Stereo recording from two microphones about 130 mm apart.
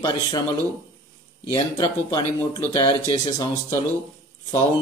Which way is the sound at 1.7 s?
30° left (ahead or behind).